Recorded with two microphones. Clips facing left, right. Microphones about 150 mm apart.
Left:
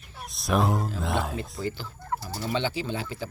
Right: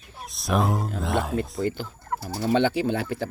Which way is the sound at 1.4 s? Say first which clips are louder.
Right 6 dB; 50° right (ahead or behind).